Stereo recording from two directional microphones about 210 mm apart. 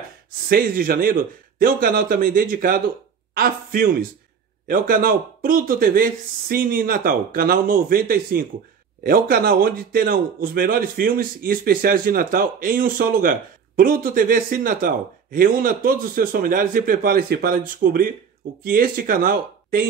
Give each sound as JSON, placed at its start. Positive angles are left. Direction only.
{"t": 0.5, "sound": "a man's voice", "side_deg": -45}